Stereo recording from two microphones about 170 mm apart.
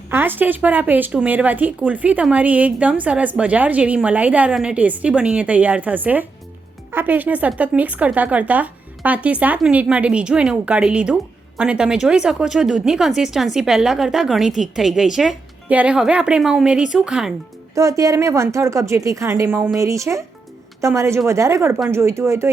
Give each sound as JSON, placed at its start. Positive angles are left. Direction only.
{"t": 0.1, "sound": "a woman's voice", "side_deg": -10}
{"t": 17.7, "sound": "speech", "side_deg": -20}